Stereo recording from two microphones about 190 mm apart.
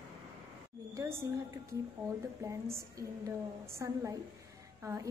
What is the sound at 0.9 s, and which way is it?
A woman's voice, 15° right (ahead or behind).